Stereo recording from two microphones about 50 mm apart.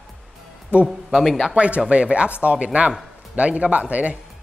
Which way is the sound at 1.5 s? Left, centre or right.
Right.